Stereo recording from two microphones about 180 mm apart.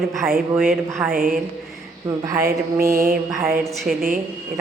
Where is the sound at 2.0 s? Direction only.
20° right (ahead or behind).